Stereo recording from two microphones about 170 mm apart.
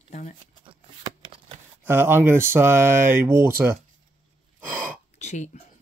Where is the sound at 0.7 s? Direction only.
30° right (ahead or behind).